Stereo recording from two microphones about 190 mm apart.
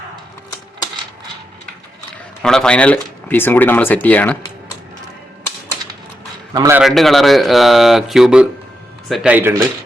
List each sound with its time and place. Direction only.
2.4 s speech: 5° left (ahead or behind)
6.5 s speech: 15° right (ahead or behind)
6.8 s speech: centre (ahead or behind)